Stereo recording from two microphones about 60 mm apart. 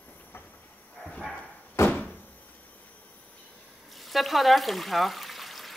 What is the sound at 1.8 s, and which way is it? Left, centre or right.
Door, left.